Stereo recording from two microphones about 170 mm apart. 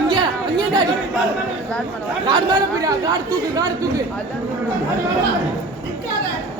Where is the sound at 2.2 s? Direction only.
25° right (ahead or behind).